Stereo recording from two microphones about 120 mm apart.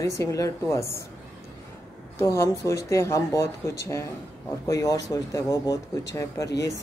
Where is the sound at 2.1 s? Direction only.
25° left (ahead or behind).